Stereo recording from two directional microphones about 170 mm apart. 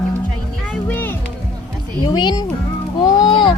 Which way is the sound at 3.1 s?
25° left (ahead or behind).